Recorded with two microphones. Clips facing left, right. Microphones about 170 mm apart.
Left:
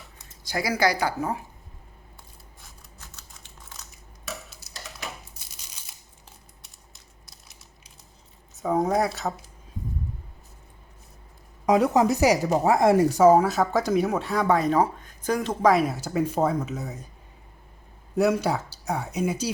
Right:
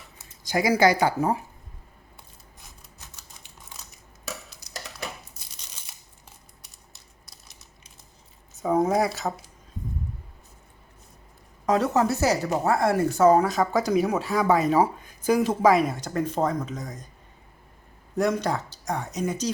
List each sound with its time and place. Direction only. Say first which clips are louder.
0.4 s speech: right 4 dB; 20° right (ahead or behind)
3.2 s typing: even; 10° right (ahead or behind)
8.5 s speech: right 1 dB; centre (ahead or behind)
11.6 s speech: left 2 dB; 10° left (ahead or behind)
18.2 s speech: left 2 dB; 5° left (ahead or behind)